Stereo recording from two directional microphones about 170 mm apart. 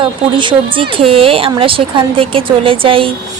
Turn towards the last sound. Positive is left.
turn(degrees=-30)  # may be behind; listen again after turning